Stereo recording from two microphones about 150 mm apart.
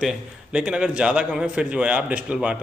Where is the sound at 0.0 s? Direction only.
5° right (ahead or behind).